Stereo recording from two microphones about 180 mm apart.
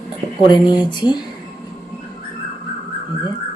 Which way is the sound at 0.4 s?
25° left (ahead or behind).